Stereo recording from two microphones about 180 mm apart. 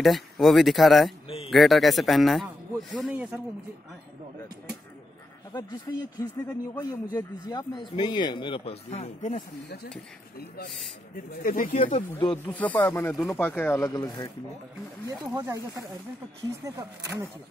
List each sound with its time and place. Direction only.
0.0 s speech: centre (ahead or behind)
5.5 s speech: 25° left (ahead or behind); by 9.4 s 40° left (ahead or behind)
11.3 s speech: 55° left (ahead or behind)
12.4 s speech: 10° left (ahead or behind)
15.0 s speech: 20° right (ahead or behind)